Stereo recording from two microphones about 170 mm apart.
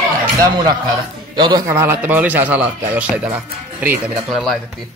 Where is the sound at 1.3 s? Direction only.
25° right (ahead or behind).